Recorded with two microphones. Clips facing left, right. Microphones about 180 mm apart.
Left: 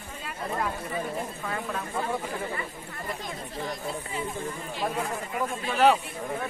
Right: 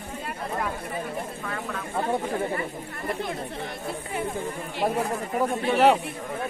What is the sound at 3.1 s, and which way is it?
Speech, 60° right (ahead or behind).